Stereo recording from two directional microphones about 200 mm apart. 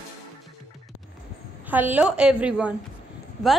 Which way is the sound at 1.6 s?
10° right (ahead or behind).